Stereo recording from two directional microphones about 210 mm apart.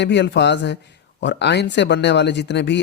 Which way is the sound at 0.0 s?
55° left (ahead or behind).